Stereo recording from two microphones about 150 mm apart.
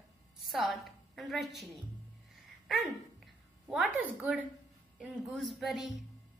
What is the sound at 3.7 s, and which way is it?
A woman's voice, 10° right (ahead or behind).